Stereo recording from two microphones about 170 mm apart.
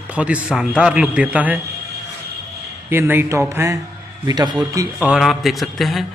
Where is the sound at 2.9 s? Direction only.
10° right (ahead or behind).